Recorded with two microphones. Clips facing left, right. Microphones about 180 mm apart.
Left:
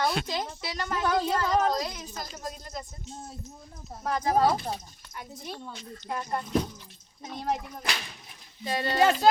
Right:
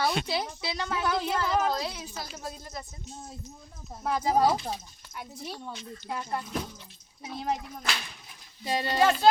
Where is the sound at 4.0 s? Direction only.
10° right (ahead or behind).